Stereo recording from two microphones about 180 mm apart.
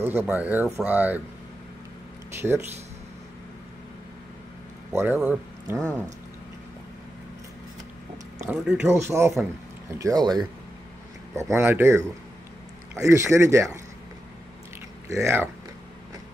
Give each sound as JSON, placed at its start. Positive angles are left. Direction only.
{"t": 0.0, "sound": "speech", "side_deg": -10}
{"t": 2.4, "sound": "speech", "side_deg": -15}
{"t": 4.9, "sound": "speech", "side_deg": -10}
{"t": 8.5, "sound": "speech", "side_deg": -5}
{"t": 15.0, "sound": "speech", "side_deg": -15}